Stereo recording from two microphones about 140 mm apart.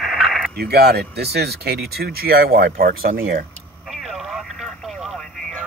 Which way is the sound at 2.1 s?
90° right.